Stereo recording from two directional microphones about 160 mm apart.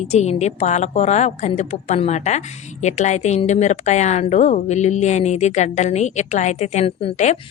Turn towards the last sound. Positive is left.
turn(degrees=40)  # may be behind; listen again after turning